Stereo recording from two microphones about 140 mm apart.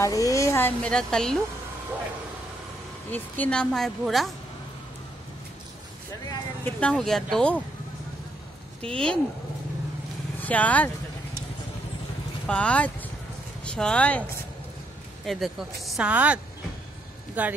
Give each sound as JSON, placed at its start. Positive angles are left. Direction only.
{"t": 0.0, "sound": "speech", "side_deg": 25}
{"t": 3.1, "sound": "a woman's voice", "side_deg": 10}
{"t": 6.6, "sound": "a woman's voice", "side_deg": 5}
{"t": 8.8, "sound": "a woman's voice", "side_deg": 5}
{"t": 10.4, "sound": "speech", "side_deg": 10}
{"t": 12.4, "sound": "speech", "side_deg": 10}
{"t": 15.2, "sound": "a woman's voice", "side_deg": 0}
{"t": 17.4, "sound": "speech", "side_deg": -10}